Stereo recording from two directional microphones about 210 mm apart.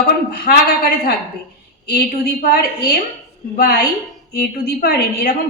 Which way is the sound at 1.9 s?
45° left (ahead or behind).